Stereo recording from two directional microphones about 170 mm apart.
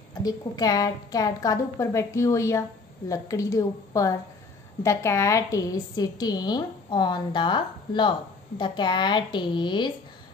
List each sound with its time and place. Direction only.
0.1 s a woman's voice: 20° left (ahead or behind)